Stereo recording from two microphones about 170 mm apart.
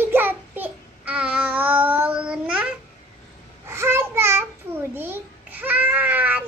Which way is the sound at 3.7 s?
15° right (ahead or behind).